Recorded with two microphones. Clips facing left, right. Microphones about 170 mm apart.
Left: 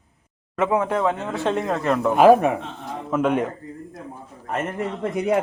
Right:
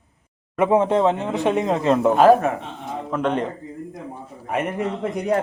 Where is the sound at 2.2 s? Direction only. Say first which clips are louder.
Left 4 dB; 15° left (ahead or behind).